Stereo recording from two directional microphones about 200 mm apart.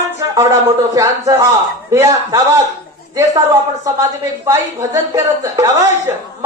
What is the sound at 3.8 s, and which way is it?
Speech, 15° right (ahead or behind).